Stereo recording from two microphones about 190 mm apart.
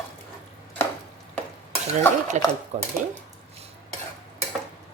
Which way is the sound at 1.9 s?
35° right (ahead or behind).